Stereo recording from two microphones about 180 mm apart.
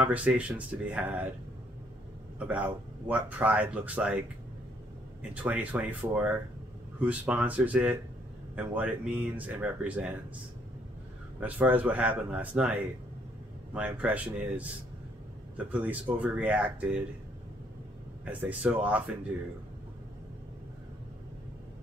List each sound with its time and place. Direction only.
0.0 s speech: 10° right (ahead or behind)
2.3 s speech: 5° right (ahead or behind)
5.3 s speech: 10° right (ahead or behind)
11.3 s speech: 10° right (ahead or behind)
18.2 s speech: 10° right (ahead or behind)